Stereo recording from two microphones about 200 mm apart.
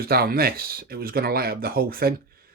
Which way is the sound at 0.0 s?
50° right (ahead or behind).